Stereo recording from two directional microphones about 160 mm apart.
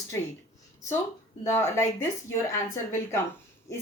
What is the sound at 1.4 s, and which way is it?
Speech, 15° left (ahead or behind).